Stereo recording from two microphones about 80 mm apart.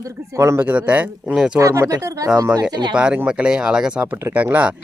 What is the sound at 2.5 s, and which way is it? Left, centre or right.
Speech, right.